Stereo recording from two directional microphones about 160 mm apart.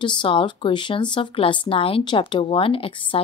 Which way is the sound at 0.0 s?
30° left (ahead or behind).